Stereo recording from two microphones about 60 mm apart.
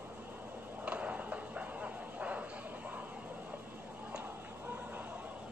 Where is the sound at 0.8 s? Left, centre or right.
Right.